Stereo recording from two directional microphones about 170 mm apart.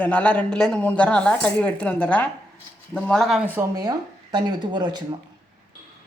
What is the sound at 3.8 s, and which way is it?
Speech, 25° right (ahead or behind).